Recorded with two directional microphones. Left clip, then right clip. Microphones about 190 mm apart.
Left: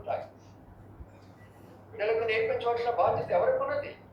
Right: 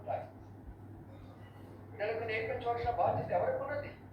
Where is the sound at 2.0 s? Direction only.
40° left (ahead or behind).